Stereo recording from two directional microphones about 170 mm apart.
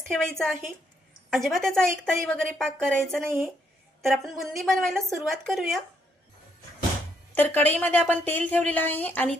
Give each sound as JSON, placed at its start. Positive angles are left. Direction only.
{"t": 0.1, "sound": "a woman's voice", "side_deg": 5}
{"t": 7.3, "sound": "a woman's voice", "side_deg": 10}